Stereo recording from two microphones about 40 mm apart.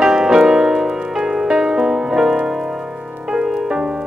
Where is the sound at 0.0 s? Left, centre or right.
Centre.